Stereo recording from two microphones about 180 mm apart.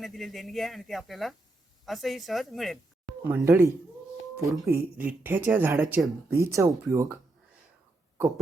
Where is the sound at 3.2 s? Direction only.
10° right (ahead or behind).